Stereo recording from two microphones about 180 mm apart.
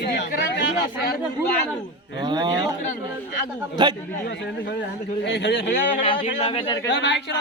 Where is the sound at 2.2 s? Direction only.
25° right (ahead or behind).